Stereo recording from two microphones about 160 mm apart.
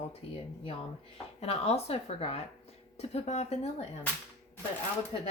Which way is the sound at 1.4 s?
40° left (ahead or behind).